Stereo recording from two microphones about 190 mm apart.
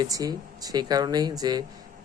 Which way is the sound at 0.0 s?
20° right (ahead or behind).